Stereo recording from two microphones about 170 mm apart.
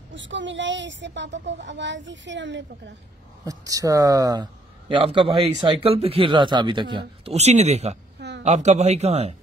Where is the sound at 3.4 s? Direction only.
20° right (ahead or behind); by 9.3 s 40° right (ahead or behind).